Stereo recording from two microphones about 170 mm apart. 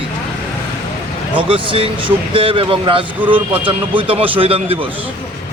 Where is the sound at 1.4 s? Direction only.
30° right (ahead or behind).